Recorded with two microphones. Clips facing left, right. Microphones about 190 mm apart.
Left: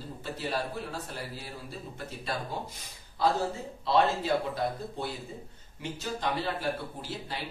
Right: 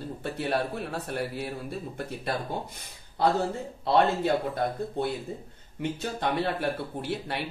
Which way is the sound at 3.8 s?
55° right (ahead or behind).